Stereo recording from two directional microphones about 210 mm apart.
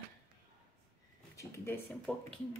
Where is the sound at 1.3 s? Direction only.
15° left (ahead or behind).